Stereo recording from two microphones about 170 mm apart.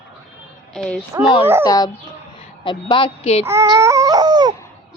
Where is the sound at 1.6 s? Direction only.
25° left (ahead or behind).